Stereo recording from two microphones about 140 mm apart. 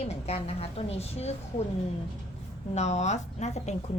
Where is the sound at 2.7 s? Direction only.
55° left (ahead or behind).